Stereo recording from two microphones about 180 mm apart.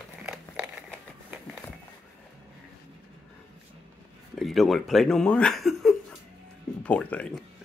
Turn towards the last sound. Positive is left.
turn(degrees=5)  # may be behind; listen again after turning